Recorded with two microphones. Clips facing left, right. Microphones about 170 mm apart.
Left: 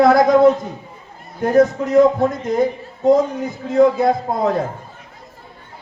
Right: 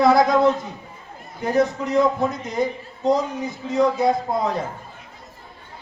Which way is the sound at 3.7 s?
55° left (ahead or behind).